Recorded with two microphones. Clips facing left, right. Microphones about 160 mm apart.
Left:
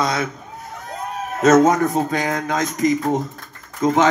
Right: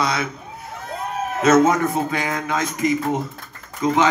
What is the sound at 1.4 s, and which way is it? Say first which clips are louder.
Speech: left 2 dB; 45° left (ahead or behind).